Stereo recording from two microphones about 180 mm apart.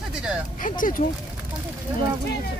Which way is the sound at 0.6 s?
50° left (ahead or behind).